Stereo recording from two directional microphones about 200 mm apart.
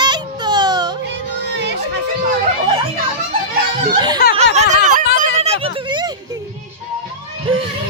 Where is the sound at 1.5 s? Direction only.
60° right (ahead or behind).